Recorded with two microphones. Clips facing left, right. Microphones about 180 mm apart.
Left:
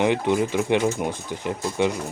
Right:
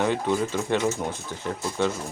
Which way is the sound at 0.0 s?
20° left (ahead or behind).